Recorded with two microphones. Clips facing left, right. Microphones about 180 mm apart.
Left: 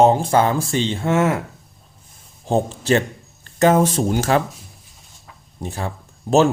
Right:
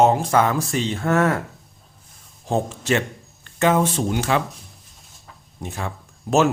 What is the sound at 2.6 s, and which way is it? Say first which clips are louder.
Speech: left 4 dB; 35° left (ahead or behind).